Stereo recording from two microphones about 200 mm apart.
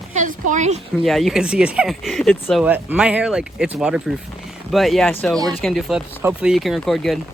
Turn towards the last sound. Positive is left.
turn(degrees=0)  # may be behind; listen again after turning